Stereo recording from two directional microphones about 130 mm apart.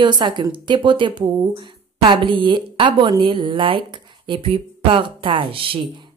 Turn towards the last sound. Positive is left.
turn(degrees=-45)  # may be behind; listen again after turning